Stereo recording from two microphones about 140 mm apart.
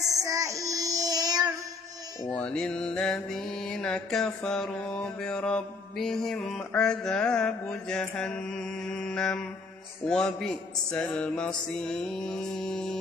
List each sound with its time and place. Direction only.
0.2 s child singing: 25° right (ahead or behind)
2.3 s mantra: 5° left (ahead or behind)